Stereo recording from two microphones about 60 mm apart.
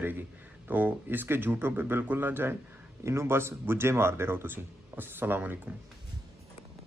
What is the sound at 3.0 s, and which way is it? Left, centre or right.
Speech, right.